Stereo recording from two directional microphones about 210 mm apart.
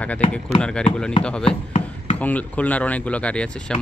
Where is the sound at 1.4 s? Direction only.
35° left (ahead or behind).